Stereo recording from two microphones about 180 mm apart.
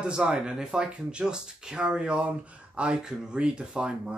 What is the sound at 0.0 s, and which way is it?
Speech, 5° right (ahead or behind).